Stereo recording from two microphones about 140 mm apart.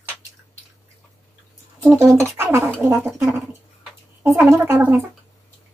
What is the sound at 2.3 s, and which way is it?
Speech, 20° right (ahead or behind).